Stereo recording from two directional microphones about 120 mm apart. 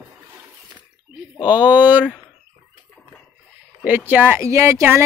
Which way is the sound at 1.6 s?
15° right (ahead or behind).